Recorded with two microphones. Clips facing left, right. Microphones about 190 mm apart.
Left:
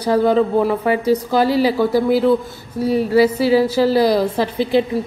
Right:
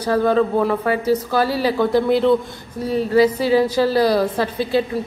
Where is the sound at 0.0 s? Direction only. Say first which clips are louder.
Left 2 dB; 10° left (ahead or behind).